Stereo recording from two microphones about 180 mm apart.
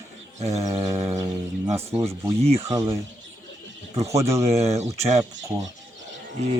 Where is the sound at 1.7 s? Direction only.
15° right (ahead or behind).